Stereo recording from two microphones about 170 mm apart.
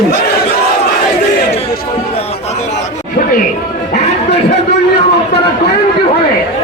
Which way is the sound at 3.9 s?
35° left (ahead or behind).